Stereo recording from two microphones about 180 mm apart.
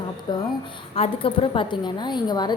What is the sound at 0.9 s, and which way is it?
A woman's voice, 30° left (ahead or behind).